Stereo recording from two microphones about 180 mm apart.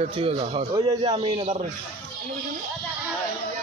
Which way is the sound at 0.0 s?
30° right (ahead or behind).